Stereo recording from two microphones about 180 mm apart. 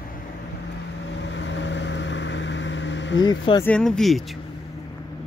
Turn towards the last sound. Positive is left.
turn(degrees=0)  # may be behind; listen again after turning